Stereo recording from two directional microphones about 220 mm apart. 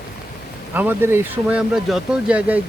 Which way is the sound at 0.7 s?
10° right (ahead or behind).